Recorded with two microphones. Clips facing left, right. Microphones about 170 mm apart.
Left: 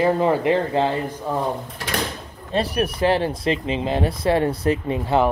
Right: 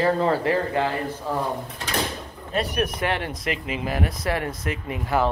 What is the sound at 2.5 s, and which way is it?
A woman's voice, 30° left (ahead or behind).